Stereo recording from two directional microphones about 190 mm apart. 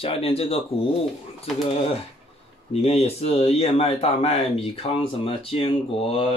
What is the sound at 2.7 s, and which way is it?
Speech, 35° left (ahead or behind).